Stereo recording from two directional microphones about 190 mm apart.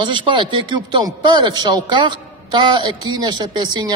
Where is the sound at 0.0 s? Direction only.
25° right (ahead or behind).